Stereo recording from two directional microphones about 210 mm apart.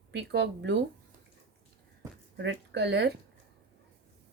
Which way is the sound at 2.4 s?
55° right (ahead or behind).